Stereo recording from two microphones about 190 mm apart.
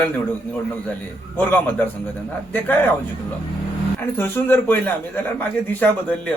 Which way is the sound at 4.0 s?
10° left (ahead or behind).